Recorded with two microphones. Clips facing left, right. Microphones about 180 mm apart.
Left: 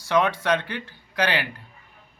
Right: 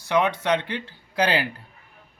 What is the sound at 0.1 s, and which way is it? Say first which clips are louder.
Speech: even; 15° right (ahead or behind).